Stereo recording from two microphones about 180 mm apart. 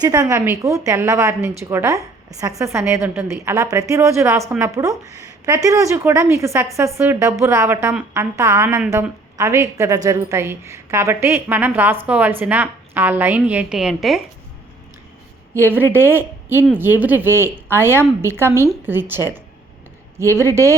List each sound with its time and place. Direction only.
0.0 s a woman's voice: 20° right (ahead or behind); by 14.2 s centre (ahead or behind)
15.8 s a woman's voice: 10° right (ahead or behind)